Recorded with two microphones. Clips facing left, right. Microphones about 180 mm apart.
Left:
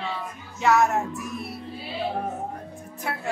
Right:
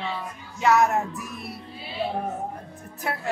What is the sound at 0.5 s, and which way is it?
Speech, centre (ahead or behind).